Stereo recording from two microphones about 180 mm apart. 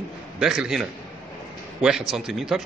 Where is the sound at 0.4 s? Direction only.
5° right (ahead or behind).